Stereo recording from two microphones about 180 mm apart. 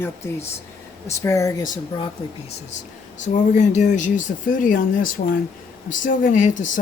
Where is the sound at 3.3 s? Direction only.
40° left (ahead or behind).